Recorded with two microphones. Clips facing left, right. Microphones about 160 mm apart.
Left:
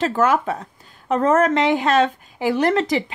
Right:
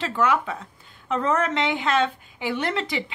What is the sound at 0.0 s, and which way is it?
A woman's voice, 40° left (ahead or behind).